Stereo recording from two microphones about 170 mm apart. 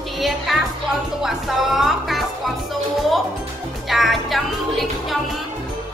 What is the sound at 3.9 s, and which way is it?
Speech, centre (ahead or behind).